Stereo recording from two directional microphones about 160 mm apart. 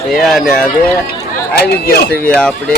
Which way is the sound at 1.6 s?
75° left (ahead or behind).